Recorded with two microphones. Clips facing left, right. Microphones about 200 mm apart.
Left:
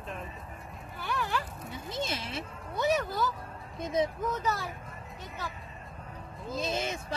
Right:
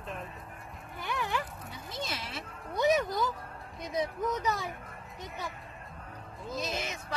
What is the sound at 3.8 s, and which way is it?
Speech, 25° left (ahead or behind).